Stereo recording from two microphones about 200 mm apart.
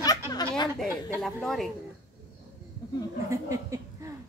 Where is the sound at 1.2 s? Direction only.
Centre (ahead or behind).